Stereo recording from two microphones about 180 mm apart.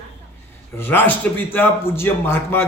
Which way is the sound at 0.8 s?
10° left (ahead or behind).